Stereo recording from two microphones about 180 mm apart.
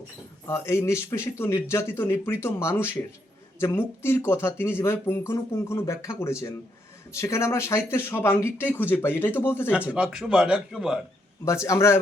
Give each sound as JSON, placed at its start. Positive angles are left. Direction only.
{"t": 0.4, "sound": "speech", "side_deg": 15}
{"t": 9.7, "sound": "a man's voice", "side_deg": -5}
{"t": 11.4, "sound": "speech", "side_deg": 15}